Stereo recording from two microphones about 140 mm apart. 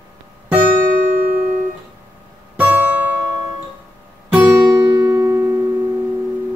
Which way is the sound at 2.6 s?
10° right (ahead or behind).